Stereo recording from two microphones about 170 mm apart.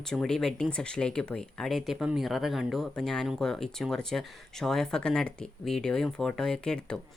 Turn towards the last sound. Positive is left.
turn(degrees=5)  # may be behind; listen again after turning